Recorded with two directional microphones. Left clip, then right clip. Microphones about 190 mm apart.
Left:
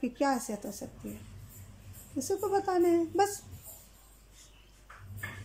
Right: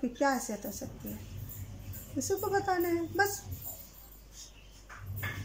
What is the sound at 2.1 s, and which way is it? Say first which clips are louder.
A woman's voice: left 1 dB; 10° left (ahead or behind).